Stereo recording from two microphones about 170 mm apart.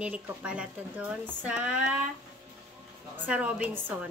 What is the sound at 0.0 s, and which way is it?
Speech, 10° right (ahead or behind).